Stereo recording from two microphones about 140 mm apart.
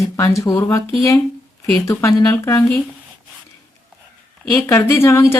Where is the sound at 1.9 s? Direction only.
20° left (ahead or behind).